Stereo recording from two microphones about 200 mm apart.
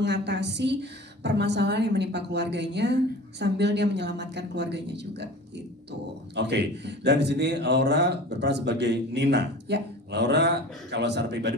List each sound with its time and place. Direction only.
0.0 s a man's voice: 60° right (ahead or behind)
6.3 s a man's voice: 60° right (ahead or behind)